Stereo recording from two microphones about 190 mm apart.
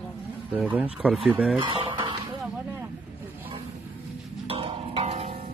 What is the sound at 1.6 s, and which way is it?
Speech, 25° right (ahead or behind).